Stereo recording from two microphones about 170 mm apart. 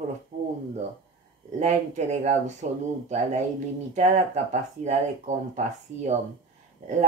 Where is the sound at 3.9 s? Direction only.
45° right (ahead or behind).